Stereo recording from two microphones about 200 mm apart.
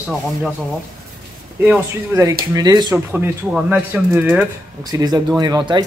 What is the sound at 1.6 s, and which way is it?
Speech, 10° right (ahead or behind).